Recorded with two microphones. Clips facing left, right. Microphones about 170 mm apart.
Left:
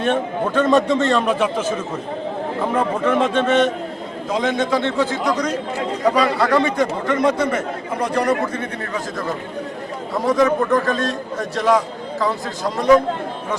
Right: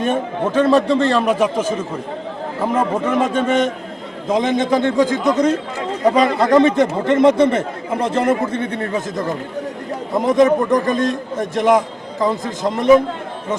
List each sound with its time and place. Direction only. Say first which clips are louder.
0.0 s speech: right 1 dB; 10° right (ahead or behind)
0.9 s a man's voice: right 2 dB; centre (ahead or behind)
2.6 s a man's voice: right 3 dB; 10° right (ahead or behind)